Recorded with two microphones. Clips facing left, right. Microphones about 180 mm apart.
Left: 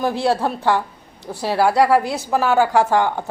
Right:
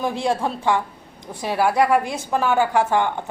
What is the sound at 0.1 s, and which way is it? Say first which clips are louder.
Speech: left 3 dB; 70° left (ahead or behind).